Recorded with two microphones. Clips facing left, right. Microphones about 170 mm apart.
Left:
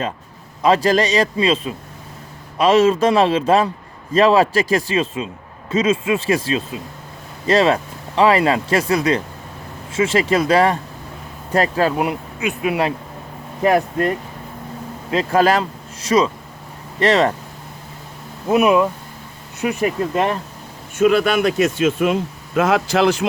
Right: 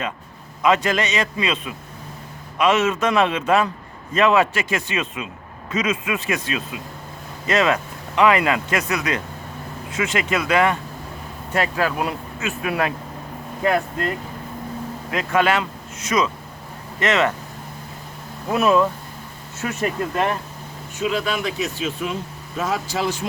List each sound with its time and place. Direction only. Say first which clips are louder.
0.6 s speech: left 4 dB; 35° left (ahead or behind); by 14.1 s 15° left (ahead or behind)
15.1 s speech: left 4 dB; 30° left (ahead or behind)
18.4 s speech: left 3 dB; 20° left (ahead or behind)
21.0 s speech: left 8 dB; 70° left (ahead or behind)